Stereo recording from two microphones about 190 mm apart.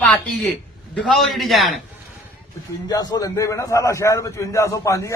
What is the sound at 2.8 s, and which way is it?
A man's voice, 20° left (ahead or behind).